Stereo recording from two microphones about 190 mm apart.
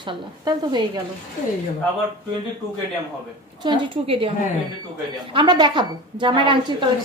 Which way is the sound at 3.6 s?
25° right (ahead or behind).